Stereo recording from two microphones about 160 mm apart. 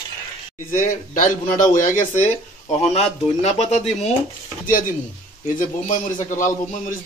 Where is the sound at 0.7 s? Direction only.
60° left (ahead or behind).